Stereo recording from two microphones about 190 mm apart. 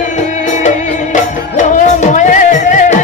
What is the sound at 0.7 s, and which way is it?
Music, 40° left (ahead or behind).